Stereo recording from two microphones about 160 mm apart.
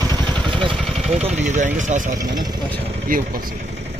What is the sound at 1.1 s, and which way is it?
Speech, 45° right (ahead or behind).